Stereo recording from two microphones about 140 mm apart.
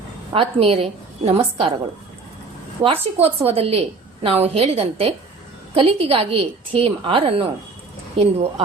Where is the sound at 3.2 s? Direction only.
45° right (ahead or behind).